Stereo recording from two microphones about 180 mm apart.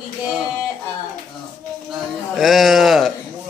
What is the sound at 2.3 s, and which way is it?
Speech, centre (ahead or behind).